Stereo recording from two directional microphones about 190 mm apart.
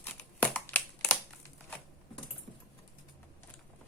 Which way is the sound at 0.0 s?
10° left (ahead or behind).